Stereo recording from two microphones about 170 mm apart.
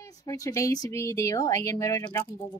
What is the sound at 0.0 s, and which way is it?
Speech, 20° left (ahead or behind).